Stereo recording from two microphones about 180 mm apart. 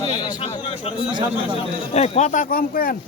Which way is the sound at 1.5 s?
35° left (ahead or behind).